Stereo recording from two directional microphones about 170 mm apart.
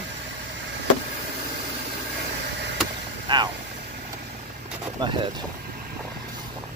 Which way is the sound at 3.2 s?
25° right (ahead or behind).